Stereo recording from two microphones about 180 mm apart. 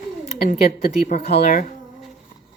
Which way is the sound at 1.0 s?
40° left (ahead or behind).